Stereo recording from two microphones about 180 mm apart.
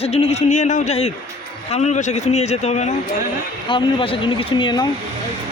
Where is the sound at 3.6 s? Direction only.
30° left (ahead or behind).